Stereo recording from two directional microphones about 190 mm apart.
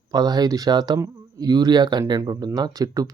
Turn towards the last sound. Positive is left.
turn(degrees=-20)  # may be behind; listen again after turning